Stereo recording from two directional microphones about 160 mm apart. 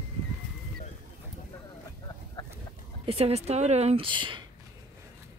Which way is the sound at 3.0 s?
40° right (ahead or behind).